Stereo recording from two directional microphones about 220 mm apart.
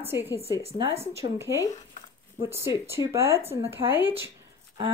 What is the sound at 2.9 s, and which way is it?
Speech, 10° right (ahead or behind).